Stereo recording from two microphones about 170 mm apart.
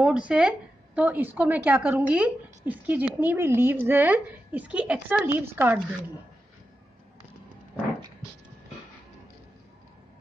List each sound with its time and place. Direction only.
0.0 s a woman's voice: 5° right (ahead or behind)